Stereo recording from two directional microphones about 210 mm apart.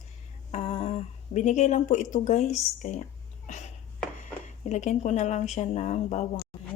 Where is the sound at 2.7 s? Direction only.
35° left (ahead or behind).